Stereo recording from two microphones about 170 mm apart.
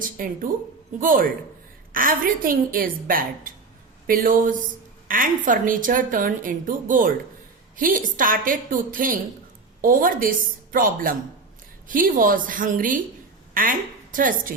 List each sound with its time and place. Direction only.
0.2 s a woman's voice: 55° right (ahead or behind)